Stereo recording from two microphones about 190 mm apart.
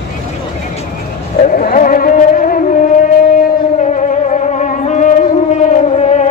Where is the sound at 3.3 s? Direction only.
40° left (ahead or behind).